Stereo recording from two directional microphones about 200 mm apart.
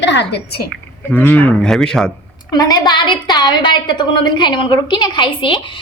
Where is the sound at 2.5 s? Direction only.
20° left (ahead or behind).